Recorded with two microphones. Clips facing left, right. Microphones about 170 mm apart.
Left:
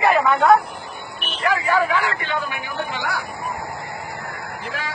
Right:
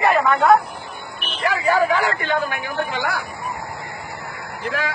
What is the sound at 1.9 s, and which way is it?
Speech, 40° right (ahead or behind).